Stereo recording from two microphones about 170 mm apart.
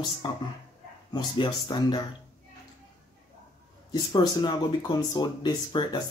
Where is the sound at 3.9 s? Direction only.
25° left (ahead or behind).